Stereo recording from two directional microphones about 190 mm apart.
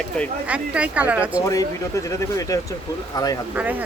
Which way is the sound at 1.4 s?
15° left (ahead or behind).